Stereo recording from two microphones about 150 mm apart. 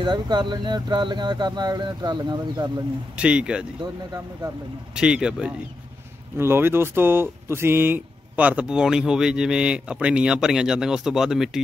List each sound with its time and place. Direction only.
0.0 s speech: 30° right (ahead or behind)
3.2 s speech: 5° right (ahead or behind)
3.8 s speech: 25° right (ahead or behind)
4.9 s a man's voice: 5° right (ahead or behind)